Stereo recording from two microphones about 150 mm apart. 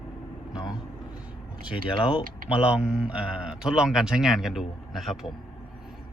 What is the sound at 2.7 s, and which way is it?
Speech, 5° right (ahead or behind).